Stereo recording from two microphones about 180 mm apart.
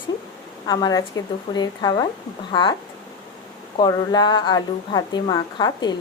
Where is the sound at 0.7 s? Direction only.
20° left (ahead or behind).